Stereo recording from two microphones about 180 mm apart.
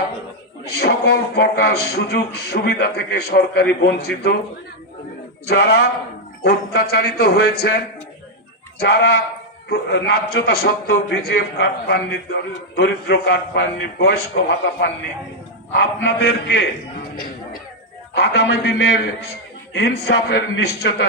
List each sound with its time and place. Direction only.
0.7 s a man's voice: 60° left (ahead or behind)
5.5 s a man's voice: 65° left (ahead or behind)
8.8 s a man's voice: 60° left (ahead or behind)
16.0 s a man's voice: 65° left (ahead or behind)
18.1 s a man's voice: 65° left (ahead or behind)